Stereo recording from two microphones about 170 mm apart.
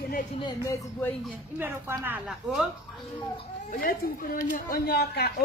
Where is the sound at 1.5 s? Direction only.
10° right (ahead or behind).